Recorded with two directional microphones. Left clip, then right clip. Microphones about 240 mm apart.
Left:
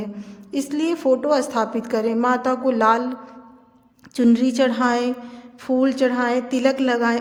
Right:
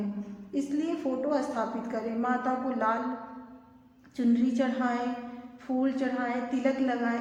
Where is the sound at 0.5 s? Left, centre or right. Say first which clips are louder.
Left 8 dB; left.